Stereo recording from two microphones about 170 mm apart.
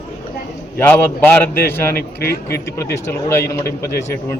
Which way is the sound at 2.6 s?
15° left (ahead or behind).